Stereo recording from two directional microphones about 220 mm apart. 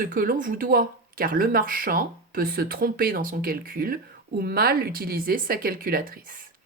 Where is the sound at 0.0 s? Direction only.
40° right (ahead or behind).